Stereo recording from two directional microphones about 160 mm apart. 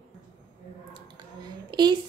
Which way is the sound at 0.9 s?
25° right (ahead or behind).